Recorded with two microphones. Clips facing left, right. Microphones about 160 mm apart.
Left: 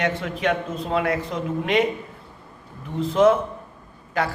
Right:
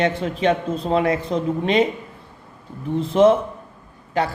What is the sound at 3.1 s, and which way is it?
Speech, 25° right (ahead or behind).